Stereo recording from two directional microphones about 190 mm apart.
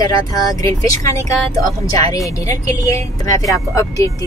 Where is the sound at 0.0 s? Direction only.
20° left (ahead or behind).